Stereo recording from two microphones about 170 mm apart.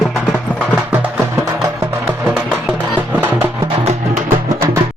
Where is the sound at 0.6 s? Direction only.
5° right (ahead or behind).